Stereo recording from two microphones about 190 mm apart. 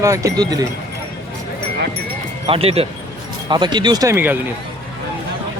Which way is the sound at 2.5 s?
30° right (ahead or behind).